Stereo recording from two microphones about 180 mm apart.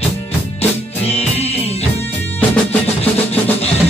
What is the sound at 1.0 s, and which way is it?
Music, 35° left (ahead or behind).